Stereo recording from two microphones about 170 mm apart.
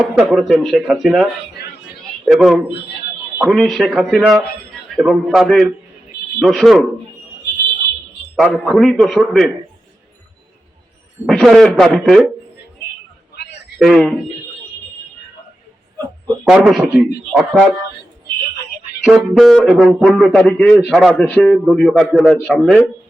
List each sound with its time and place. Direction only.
0.2 s speech: centre (ahead or behind)
1.6 s speech: 65° left (ahead or behind)
2.2 s a man's voice: centre (ahead or behind)
8.4 s speech: centre (ahead or behind)
11.3 s speech: 5° left (ahead or behind)
13.7 s speech: centre (ahead or behind)
16.4 s speech: centre (ahead or behind)
19.0 s a man's voice: centre (ahead or behind)